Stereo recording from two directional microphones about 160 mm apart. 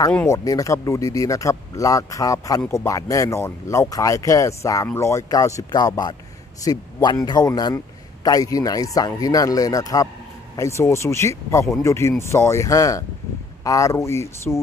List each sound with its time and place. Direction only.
0.1 s a man's voice: 15° left (ahead or behind)